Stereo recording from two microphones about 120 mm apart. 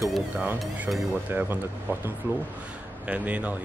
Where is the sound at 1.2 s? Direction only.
15° right (ahead or behind).